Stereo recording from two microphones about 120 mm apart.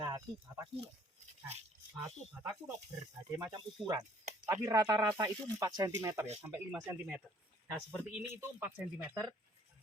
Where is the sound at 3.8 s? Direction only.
35° right (ahead or behind); by 7.2 s 15° right (ahead or behind).